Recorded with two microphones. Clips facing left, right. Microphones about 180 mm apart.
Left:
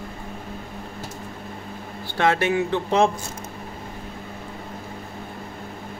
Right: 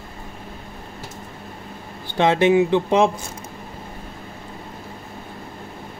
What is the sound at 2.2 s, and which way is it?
Speech, 20° right (ahead or behind).